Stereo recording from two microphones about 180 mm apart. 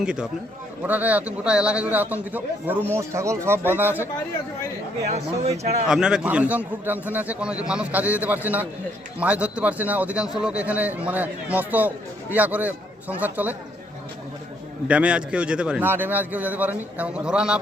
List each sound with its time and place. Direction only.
0.0 s a man's voice: 5° right (ahead or behind)
5.0 s speech: 35° right (ahead or behind)
5.9 s a man's voice: 5° right (ahead or behind)
14.8 s a man's voice: 5° right (ahead or behind)